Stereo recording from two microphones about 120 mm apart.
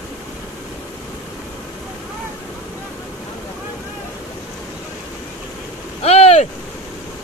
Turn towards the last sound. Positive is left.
turn(degrees=60)  # may be behind; listen again after turning